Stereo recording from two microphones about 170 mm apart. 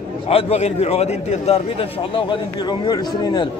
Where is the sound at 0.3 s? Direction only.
35° left (ahead or behind).